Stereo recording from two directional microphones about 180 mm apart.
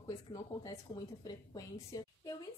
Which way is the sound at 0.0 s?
20° left (ahead or behind).